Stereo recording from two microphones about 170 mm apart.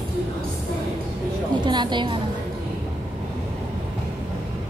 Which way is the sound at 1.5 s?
25° right (ahead or behind).